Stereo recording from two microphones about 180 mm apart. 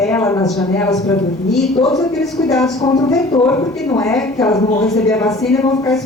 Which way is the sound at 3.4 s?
5° left (ahead or behind).